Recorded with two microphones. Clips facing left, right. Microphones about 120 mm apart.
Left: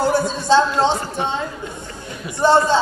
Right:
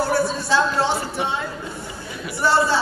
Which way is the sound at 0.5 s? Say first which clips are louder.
Left 7 dB; 25° left (ahead or behind).